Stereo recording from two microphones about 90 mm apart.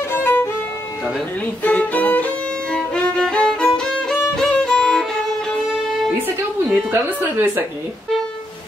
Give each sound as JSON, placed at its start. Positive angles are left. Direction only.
{"t": 0.1, "sound": "violin", "side_deg": 25}
{"t": 1.6, "sound": "violin", "side_deg": 20}
{"t": 6.2, "sound": "a woman's voice", "side_deg": -25}